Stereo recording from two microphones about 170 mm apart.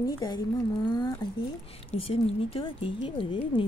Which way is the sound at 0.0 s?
20° left (ahead or behind).